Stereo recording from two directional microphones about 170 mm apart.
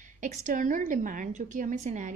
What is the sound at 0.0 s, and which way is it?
Speech, 50° right (ahead or behind).